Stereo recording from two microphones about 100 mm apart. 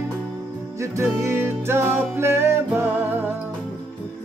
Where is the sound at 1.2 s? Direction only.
25° right (ahead or behind).